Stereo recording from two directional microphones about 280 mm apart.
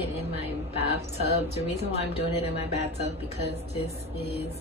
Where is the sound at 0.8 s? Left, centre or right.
Right.